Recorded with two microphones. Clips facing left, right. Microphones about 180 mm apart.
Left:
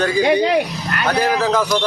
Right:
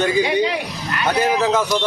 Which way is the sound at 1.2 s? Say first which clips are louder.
Even; 20° right (ahead or behind).